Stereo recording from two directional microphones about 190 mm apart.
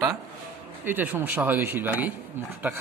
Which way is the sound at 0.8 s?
10° right (ahead or behind).